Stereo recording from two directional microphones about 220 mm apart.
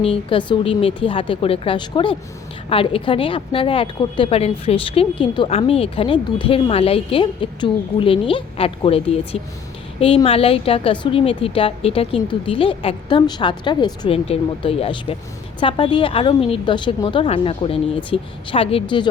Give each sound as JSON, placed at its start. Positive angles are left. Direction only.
{"t": 0.0, "sound": "a woman's voice", "side_deg": 25}